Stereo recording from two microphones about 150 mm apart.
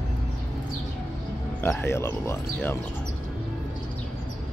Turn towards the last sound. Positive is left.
turn(degrees=15)  # may be behind; listen again after turning